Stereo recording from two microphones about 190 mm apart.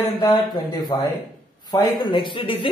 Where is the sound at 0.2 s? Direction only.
20° left (ahead or behind).